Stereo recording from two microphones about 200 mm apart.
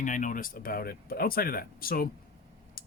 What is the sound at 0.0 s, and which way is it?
Speech, 40° left (ahead or behind).